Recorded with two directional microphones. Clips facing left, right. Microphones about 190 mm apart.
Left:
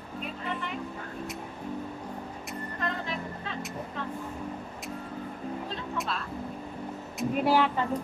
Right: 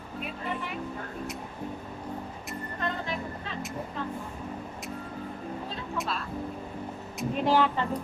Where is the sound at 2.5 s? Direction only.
Centre (ahead or behind).